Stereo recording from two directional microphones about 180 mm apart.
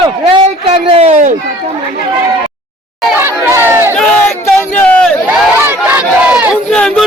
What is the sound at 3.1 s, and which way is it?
Chatter, 15° right (ahead or behind).